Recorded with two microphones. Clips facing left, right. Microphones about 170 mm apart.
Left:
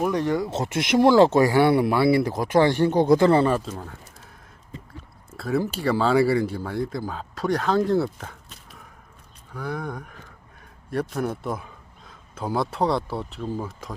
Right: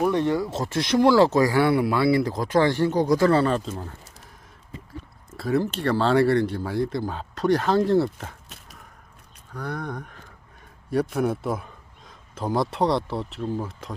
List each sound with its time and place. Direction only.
0.1 s speech: 30° right (ahead or behind)
0.3 s speech: 20° left (ahead or behind)
3.7 s speech: centre (ahead or behind)
5.4 s speech: 5° left (ahead or behind)
9.5 s speech: 5° left (ahead or behind)